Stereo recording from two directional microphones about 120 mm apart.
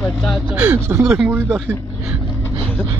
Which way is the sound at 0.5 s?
15° right (ahead or behind).